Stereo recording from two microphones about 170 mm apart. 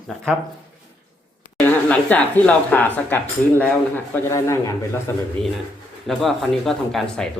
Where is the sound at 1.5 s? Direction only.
10° left (ahead or behind).